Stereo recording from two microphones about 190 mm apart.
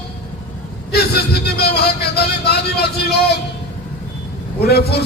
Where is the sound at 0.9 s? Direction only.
55° left (ahead or behind).